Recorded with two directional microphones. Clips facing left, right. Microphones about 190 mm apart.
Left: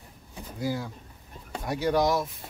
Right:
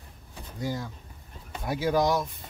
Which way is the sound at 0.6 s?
10° left (ahead or behind).